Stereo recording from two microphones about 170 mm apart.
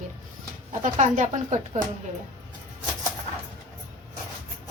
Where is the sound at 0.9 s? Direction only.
45° right (ahead or behind).